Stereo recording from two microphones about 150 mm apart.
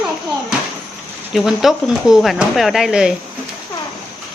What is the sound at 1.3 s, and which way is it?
Speech, centre (ahead or behind).